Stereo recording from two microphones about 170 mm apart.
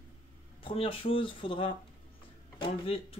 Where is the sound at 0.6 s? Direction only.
30° left (ahead or behind).